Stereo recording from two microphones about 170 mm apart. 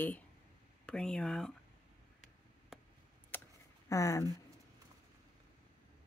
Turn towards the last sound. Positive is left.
turn(degrees=20)  # may be behind; listen again after turning